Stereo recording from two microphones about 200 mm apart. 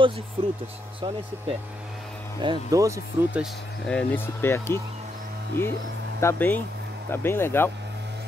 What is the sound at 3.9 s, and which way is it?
Speech, 10° left (ahead or behind).